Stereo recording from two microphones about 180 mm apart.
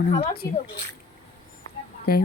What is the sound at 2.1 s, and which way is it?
Speech, 60° left (ahead or behind).